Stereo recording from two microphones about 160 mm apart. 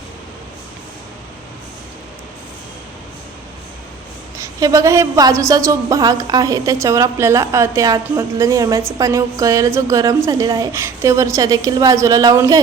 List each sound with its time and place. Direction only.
4.4 s a woman's voice: 20° right (ahead or behind)